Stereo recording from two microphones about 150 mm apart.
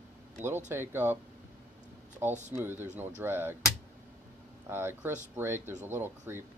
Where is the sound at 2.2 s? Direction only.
15° right (ahead or behind).